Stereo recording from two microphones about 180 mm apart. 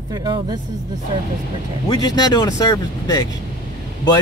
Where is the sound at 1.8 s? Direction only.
20° left (ahead or behind).